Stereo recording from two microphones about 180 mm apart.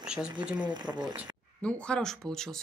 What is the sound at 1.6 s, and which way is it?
Speech, 5° left (ahead or behind).